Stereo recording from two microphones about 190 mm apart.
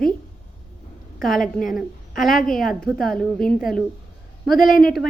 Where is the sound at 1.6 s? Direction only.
Centre (ahead or behind).